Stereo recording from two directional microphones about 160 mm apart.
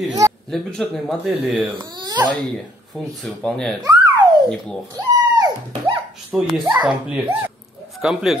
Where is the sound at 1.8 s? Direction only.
25° right (ahead or behind).